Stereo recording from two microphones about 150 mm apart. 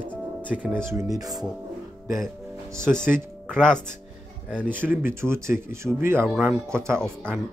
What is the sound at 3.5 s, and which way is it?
Speech, 5° left (ahead or behind).